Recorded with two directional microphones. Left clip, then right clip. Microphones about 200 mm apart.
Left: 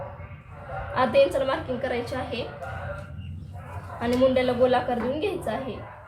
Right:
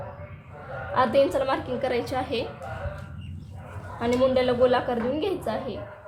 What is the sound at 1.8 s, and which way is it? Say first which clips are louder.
Speech: right 2 dB; 40° right (ahead or behind).